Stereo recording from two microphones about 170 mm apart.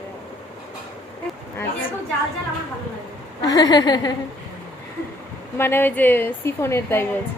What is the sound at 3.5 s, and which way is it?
Speech, 25° left (ahead or behind).